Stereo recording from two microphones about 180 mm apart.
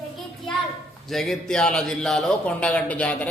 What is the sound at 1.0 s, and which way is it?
A man's voice, centre (ahead or behind).